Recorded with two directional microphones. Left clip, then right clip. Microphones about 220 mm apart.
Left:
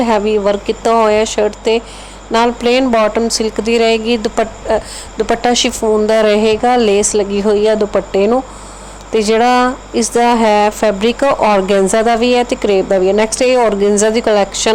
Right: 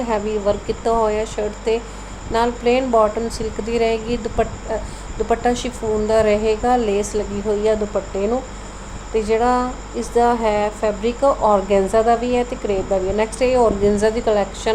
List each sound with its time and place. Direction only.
0.0 s speech: 30° left (ahead or behind)